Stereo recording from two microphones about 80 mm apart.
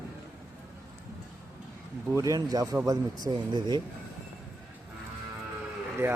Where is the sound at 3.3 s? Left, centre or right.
Right.